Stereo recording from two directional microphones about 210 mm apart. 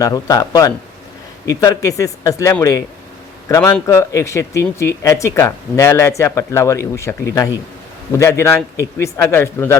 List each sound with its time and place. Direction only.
0.0 s speech: 15° left (ahead or behind)
8.2 s speech: 10° left (ahead or behind)